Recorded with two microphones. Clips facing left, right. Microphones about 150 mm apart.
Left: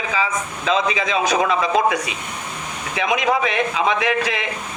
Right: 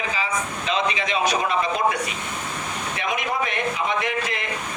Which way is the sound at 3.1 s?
90° left.